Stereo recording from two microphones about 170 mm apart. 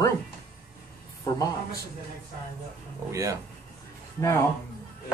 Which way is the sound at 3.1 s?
20° right (ahead or behind).